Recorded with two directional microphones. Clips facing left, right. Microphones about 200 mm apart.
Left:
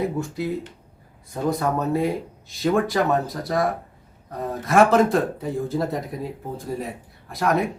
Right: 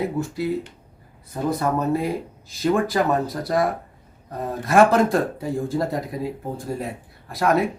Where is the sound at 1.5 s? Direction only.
Centre (ahead or behind).